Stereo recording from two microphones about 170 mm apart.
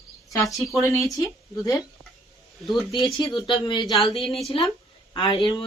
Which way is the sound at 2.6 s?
Centre (ahead or behind).